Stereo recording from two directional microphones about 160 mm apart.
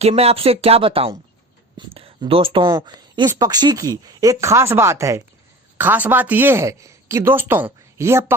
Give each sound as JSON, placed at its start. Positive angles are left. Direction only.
{"t": 0.0, "sound": "a woman's voice", "side_deg": -40}